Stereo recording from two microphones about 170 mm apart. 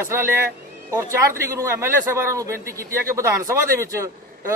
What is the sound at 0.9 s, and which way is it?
A man's voice, 15° right (ahead or behind).